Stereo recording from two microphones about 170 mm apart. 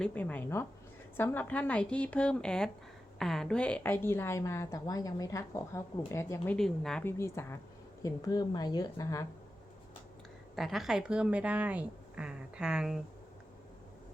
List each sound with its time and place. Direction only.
0.0 s a woman's voice: 10° left (ahead or behind)
7.0 s a woman's voice: 15° left (ahead or behind)
10.5 s speech: centre (ahead or behind)